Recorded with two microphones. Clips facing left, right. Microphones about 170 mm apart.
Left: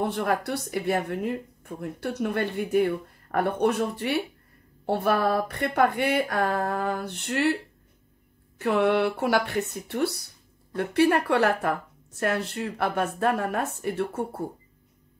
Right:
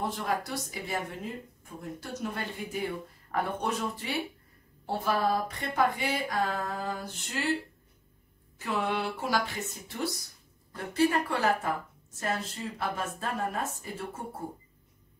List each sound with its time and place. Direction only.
0.0 s speech: 60° left (ahead or behind)
8.5 s a woman's voice: 60° left (ahead or behind)